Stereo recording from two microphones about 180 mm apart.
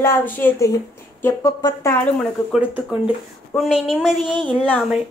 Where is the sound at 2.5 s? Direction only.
5° right (ahead or behind).